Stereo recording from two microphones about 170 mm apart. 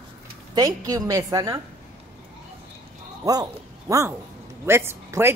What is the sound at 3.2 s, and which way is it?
Speech, 20° right (ahead or behind).